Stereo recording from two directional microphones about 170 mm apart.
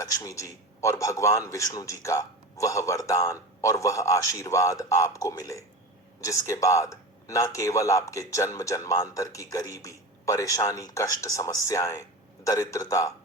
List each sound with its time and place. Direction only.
0.0 s a man's voice: 20° left (ahead or behind)